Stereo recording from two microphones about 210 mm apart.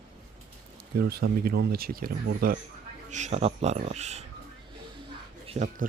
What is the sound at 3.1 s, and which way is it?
Speech, 30° right (ahead or behind).